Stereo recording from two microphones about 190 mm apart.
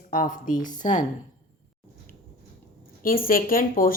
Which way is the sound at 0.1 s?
45° left (ahead or behind).